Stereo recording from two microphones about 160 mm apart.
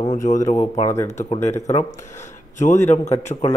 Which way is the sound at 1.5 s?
20° left (ahead or behind).